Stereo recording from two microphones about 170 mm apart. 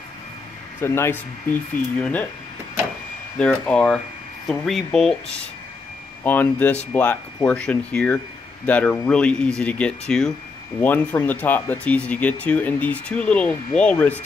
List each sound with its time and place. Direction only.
0.7 s speech: 15° left (ahead or behind)
3.3 s speech: 5° left (ahead or behind)
6.2 s speech: 10° left (ahead or behind)